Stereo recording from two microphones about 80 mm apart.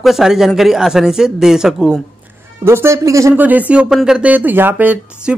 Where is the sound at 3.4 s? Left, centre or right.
Right.